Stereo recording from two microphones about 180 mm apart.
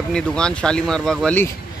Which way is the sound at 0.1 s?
5° left (ahead or behind).